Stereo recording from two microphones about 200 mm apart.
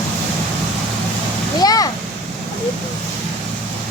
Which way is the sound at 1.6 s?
20° left (ahead or behind).